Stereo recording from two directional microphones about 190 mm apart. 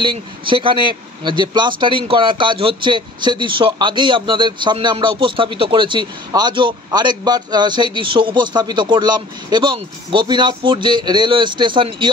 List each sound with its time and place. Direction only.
0.0 s speech: 25° right (ahead or behind)